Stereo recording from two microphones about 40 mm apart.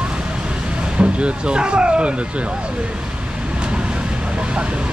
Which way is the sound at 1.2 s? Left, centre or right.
Right.